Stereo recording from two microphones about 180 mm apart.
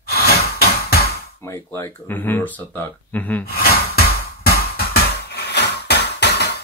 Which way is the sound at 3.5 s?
60° left (ahead or behind).